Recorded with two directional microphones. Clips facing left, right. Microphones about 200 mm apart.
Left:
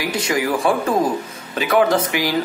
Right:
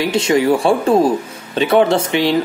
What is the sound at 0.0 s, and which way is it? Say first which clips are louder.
A man's voice: right 6 dB; 25° right (ahead or behind).